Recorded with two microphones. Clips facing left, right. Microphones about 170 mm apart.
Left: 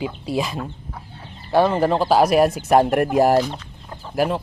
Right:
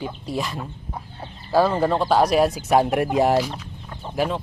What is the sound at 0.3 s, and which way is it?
Speech, 10° left (ahead or behind).